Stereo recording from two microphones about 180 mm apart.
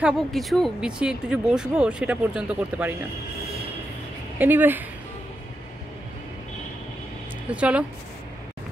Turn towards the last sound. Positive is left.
turn(degrees=-5)  # may be behind; listen again after turning